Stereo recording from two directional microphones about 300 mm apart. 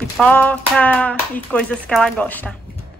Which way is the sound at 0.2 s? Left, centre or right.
Centre.